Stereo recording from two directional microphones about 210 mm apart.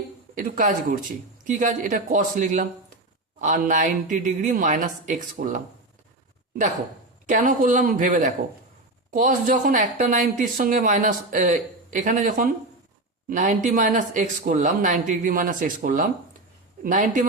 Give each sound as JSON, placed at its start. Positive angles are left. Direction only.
{"t": 0.3, "sound": "speech", "side_deg": -40}
{"t": 7.3, "sound": "speech", "side_deg": -40}